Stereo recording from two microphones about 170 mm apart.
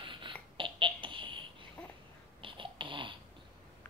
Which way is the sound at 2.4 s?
30° right (ahead or behind).